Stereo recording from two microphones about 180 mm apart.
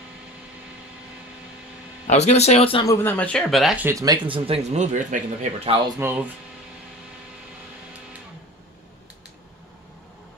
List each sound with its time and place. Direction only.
2.0 s speech: 40° left (ahead or behind)
2.9 s speech: 10° left (ahead or behind)
3.8 s speech: 20° right (ahead or behind); by 5.5 s 45° right (ahead or behind)
5.9 s speech: 10° right (ahead or behind)